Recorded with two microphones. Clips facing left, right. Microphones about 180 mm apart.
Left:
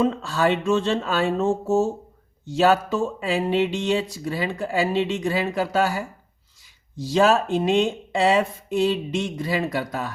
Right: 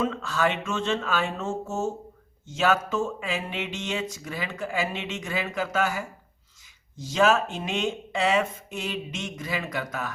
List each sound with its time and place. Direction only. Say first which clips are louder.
0.0 s speech: left 5 dB; 35° left (ahead or behind)